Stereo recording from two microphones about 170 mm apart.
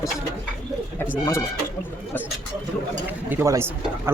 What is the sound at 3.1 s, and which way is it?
Speech, 15° right (ahead or behind).